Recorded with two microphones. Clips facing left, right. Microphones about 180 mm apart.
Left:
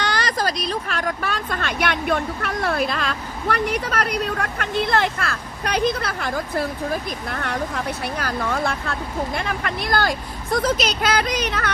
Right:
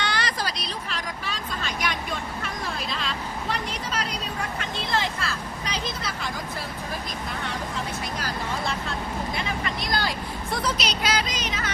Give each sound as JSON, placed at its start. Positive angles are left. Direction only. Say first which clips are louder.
{"t": 0.0, "sound": "speech", "louder": "left 6 dB", "side_deg": 45}